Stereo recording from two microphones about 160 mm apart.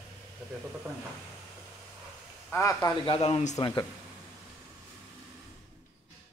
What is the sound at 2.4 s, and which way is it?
Speech, 15° left (ahead or behind).